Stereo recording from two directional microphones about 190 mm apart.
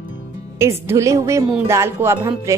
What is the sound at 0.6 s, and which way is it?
A woman's voice, 15° right (ahead or behind).